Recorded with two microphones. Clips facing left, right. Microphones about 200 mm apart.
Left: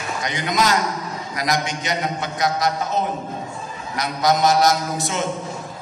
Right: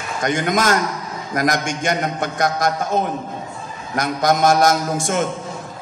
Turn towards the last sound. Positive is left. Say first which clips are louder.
# right 4 dB
turn(degrees=-50)  # may be behind; listen again after turning